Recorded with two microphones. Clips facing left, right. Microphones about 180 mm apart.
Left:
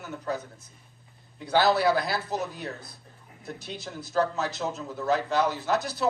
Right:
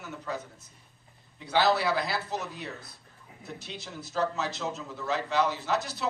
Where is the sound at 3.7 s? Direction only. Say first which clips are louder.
Left 4 dB; 50° left (ahead or behind).